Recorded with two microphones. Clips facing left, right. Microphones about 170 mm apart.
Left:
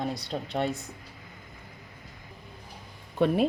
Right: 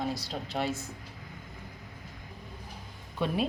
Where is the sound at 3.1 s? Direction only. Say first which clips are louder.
Left 6 dB; 80° left.